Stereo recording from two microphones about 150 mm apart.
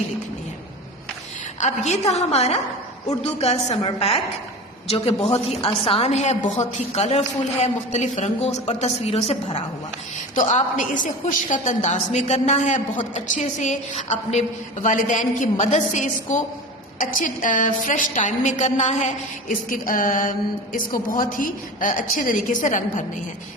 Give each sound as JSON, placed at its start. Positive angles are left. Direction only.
{"t": 1.6, "sound": "a woman's voice", "side_deg": 50}
{"t": 10.3, "sound": "a woman's voice", "side_deg": 55}